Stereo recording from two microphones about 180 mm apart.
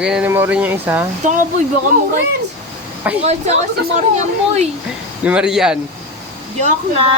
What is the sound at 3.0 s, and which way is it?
Speech, 10° right (ahead or behind).